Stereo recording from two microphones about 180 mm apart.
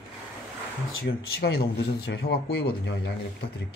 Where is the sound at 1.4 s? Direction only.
60° left (ahead or behind).